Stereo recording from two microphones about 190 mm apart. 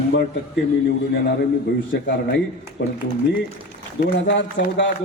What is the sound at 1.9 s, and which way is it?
Speech, 65° left (ahead or behind).